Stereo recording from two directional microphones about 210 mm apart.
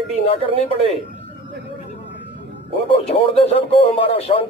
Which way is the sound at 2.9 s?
30° left (ahead or behind).